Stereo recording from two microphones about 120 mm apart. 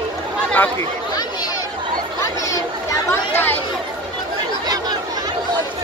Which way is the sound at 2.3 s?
30° left (ahead or behind).